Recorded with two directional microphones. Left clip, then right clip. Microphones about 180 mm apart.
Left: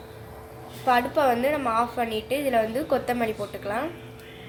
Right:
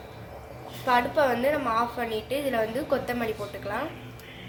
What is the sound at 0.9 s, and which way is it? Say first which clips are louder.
A woman's voice: left 2 dB; 30° left (ahead or behind).